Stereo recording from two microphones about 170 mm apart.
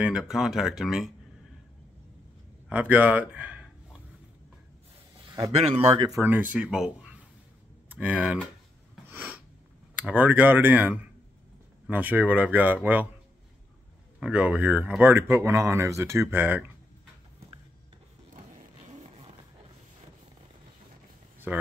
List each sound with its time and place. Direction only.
0.0 s speech: 5° right (ahead or behind)
2.7 s speech: 10° right (ahead or behind)
5.9 s speech: 20° right (ahead or behind)
9.1 s a sound: 10° right (ahead or behind)
9.9 s speech: 10° right (ahead or behind)
14.2 s speech: 5° right (ahead or behind)
18.9 s a sound: 35° right (ahead or behind)
21.5 s speech: 10° right (ahead or behind)